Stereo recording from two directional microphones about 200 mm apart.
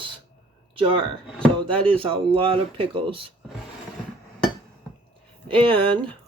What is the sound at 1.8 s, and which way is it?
Speech, 25° right (ahead or behind).